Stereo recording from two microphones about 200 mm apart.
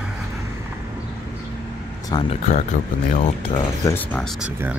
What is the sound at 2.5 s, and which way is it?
Speech, 35° left (ahead or behind).